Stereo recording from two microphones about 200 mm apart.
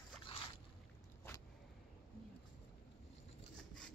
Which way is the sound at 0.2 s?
25° left (ahead or behind).